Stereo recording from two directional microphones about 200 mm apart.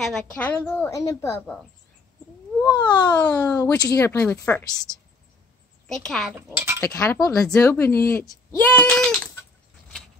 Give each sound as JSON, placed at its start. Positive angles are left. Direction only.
{"t": 0.0, "sound": "speech", "side_deg": 5}
{"t": 2.6, "sound": "speech", "side_deg": 20}
{"t": 3.1, "sound": "speech", "side_deg": 10}
{"t": 5.9, "sound": "a child's voice", "side_deg": 0}
{"t": 6.3, "sound": "speech", "side_deg": -10}
{"t": 6.8, "sound": "speech", "side_deg": 10}